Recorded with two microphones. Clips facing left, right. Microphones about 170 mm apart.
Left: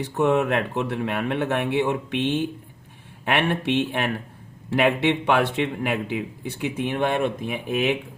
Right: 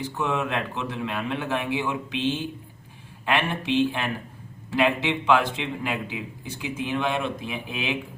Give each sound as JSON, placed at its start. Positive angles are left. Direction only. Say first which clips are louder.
{"t": 0.0, "sound": "a man's voice", "louder": "left 6 dB", "side_deg": 55}